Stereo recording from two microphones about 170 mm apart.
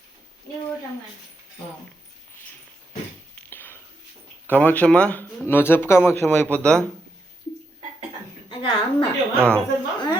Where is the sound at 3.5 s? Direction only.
10° left (ahead or behind).